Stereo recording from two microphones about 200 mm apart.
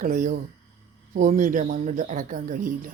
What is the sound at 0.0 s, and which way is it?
Speech, 40° right (ahead or behind).